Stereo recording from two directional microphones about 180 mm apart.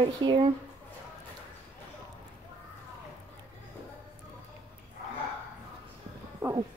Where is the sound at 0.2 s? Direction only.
25° right (ahead or behind).